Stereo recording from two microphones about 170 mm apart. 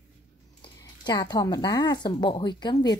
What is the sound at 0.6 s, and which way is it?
Speech, 25° left (ahead or behind).